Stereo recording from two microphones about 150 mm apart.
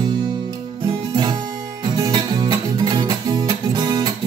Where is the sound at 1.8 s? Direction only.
30° right (ahead or behind).